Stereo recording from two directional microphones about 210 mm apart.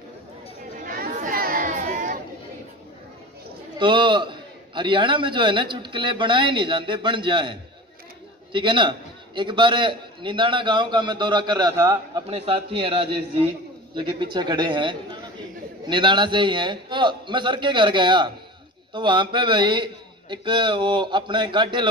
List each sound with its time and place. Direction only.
0.7 s chatter: 40° right (ahead or behind)
3.7 s a man's voice: 20° right (ahead or behind)
12.3 s a man's voice: 25° right (ahead or behind)